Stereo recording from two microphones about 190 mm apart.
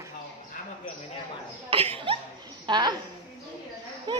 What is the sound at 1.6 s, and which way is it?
Chuckle, 30° right (ahead or behind).